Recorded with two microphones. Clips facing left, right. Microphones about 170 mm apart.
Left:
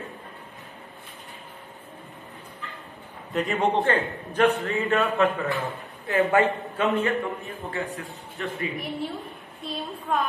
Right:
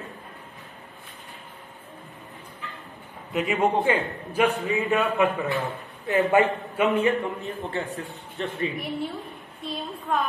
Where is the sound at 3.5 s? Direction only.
5° right (ahead or behind).